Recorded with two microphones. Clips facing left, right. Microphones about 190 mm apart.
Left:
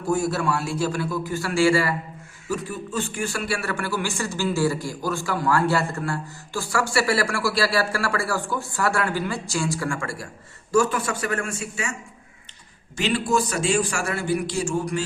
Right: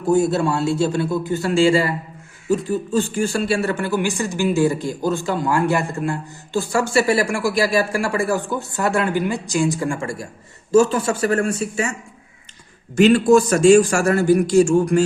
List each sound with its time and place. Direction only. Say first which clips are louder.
0.1 s speech: right 6 dB; 25° right (ahead or behind)
13.0 s a man's voice: right 10 dB; 50° right (ahead or behind)